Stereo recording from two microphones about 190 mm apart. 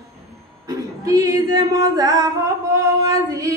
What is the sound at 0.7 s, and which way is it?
Singing, 15° right (ahead or behind).